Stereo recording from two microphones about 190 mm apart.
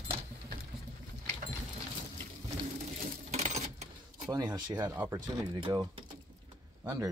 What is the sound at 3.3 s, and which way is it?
Sewing machine, 35° right (ahead or behind).